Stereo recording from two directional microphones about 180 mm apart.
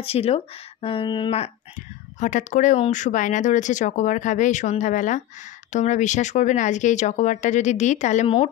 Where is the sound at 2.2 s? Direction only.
45° left (ahead or behind).